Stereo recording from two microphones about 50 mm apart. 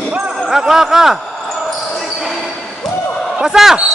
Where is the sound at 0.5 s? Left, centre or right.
Centre.